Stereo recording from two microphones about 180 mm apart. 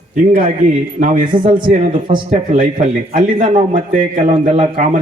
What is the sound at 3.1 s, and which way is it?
A man's voice, 45° right (ahead or behind).